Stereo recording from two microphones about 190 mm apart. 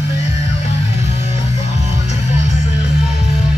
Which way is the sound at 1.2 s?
35° left (ahead or behind).